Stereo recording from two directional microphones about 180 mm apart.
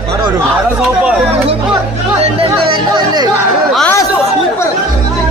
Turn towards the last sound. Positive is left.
turn(degrees=10)  # may be behind; listen again after turning